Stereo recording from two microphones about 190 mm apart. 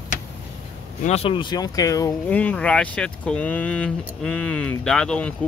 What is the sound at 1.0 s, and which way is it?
Speech, 30° left (ahead or behind).